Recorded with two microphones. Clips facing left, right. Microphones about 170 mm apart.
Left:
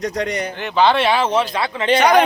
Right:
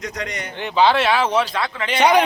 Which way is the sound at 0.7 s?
5° right (ahead or behind).